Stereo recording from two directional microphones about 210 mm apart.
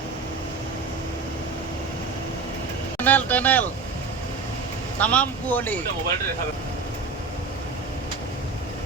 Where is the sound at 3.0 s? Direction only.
10° left (ahead or behind).